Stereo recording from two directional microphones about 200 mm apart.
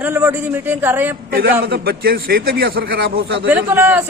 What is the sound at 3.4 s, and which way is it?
Speech, 10° right (ahead or behind).